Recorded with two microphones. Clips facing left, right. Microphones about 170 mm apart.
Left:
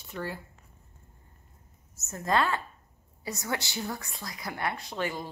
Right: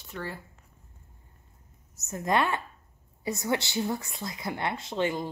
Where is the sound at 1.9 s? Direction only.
20° right (ahead or behind).